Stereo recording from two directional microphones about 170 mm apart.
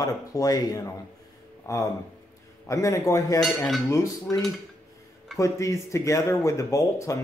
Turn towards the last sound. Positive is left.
turn(degrees=15)  # may be behind; listen again after turning